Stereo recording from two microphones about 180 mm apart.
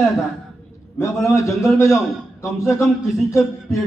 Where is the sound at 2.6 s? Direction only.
15° left (ahead or behind).